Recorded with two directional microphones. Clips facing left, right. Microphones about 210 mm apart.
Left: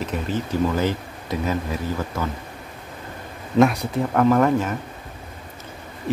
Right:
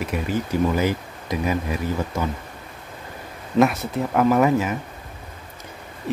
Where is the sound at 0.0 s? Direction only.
10° right (ahead or behind).